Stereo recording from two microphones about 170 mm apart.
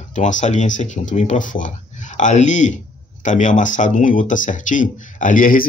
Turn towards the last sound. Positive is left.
turn(degrees=55)  # may be behind; listen again after turning